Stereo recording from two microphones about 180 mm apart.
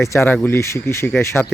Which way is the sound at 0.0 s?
15° left (ahead or behind).